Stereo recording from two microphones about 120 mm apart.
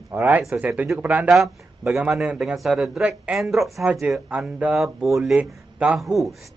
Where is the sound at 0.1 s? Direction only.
15° right (ahead or behind).